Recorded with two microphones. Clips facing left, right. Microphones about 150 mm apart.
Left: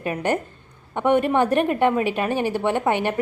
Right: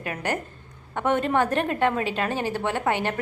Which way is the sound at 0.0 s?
20° left (ahead or behind).